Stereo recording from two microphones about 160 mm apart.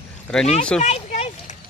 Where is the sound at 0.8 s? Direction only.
45° left (ahead or behind).